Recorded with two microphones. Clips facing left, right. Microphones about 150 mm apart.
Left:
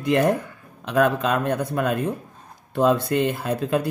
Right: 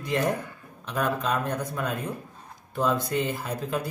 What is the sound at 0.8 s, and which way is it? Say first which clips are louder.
Speech: left 7 dB; 75° left (ahead or behind).